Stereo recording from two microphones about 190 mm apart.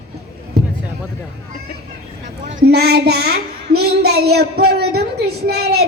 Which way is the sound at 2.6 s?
60° right (ahead or behind).